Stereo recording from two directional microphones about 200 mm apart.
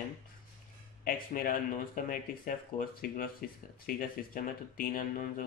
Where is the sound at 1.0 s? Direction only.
45° left (ahead or behind).